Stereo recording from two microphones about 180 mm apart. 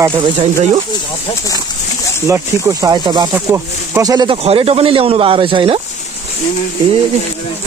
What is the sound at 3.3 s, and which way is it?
Speech, 15° right (ahead or behind).